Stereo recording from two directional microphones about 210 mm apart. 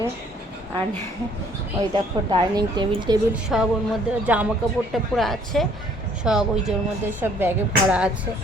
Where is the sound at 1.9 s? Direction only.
20° right (ahead or behind).